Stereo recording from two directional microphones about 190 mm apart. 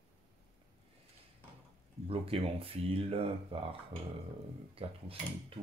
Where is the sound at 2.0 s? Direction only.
30° right (ahead or behind).